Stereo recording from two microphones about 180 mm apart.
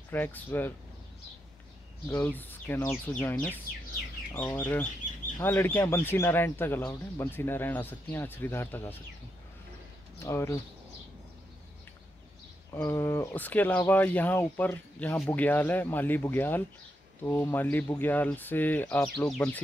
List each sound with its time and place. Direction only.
0.1 s speech: 10° left (ahead or behind)
2.0 s speech: 10° left (ahead or behind)
10.1 s speech: 15° left (ahead or behind)
12.7 s speech: 15° left (ahead or behind)